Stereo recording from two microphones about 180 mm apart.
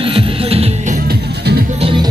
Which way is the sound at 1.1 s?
60° right (ahead or behind).